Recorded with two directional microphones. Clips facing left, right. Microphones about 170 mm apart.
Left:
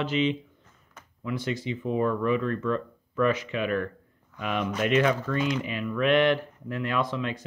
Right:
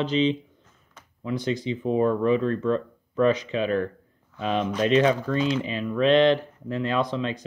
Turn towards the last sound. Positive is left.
turn(degrees=-20)  # may be behind; listen again after turning